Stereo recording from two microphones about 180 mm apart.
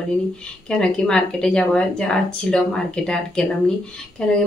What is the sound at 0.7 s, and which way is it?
A woman's voice, 5° left (ahead or behind).